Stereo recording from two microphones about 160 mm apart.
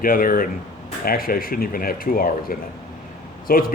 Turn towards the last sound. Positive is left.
turn(degrees=65)  # may be behind; listen again after turning